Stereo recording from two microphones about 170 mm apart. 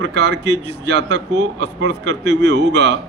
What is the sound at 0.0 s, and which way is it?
A man's voice, 90° right.